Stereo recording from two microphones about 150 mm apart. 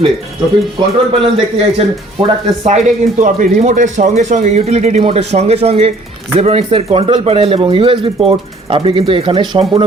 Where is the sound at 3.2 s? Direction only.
55° right (ahead or behind).